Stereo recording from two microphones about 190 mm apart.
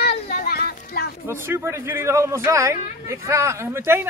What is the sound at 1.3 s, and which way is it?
Speech, 15° right (ahead or behind).